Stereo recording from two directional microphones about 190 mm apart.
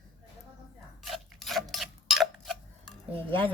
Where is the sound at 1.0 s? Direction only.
Centre (ahead or behind).